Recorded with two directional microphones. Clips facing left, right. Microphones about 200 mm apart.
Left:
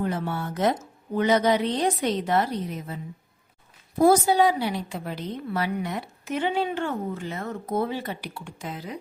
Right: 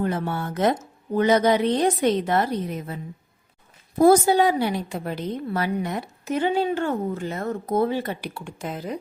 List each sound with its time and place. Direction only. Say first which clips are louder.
0.0 s a woman's voice: right 2 dB; 55° right (ahead or behind)
1.1 s a woman's voice: right 3 dB; 45° right (ahead or behind)
4.4 s a woman's voice: right 2 dB; 50° right (ahead or behind)